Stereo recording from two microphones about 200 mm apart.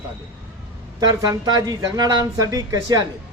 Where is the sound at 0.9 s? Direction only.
20° right (ahead or behind).